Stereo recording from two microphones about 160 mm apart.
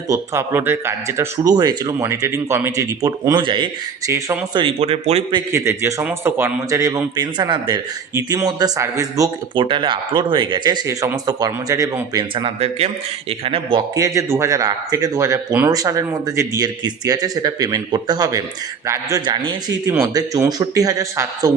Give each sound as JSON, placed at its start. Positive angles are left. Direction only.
{"t": 0.1, "sound": "speech", "side_deg": -15}
{"t": 4.1, "sound": "speech", "side_deg": -15}
{"t": 4.5, "sound": "speech", "side_deg": -35}
{"t": 5.5, "sound": "speech", "side_deg": -15}
{"t": 9.6, "sound": "speech", "side_deg": -30}
{"t": 14.0, "sound": "speech", "side_deg": -20}